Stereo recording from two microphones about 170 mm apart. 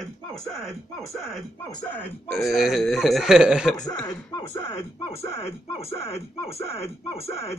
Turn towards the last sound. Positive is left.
turn(degrees=35)  # may be behind; listen again after turning